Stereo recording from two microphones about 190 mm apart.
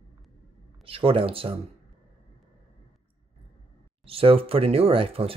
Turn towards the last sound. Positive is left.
turn(degrees=-30)  # may be behind; listen again after turning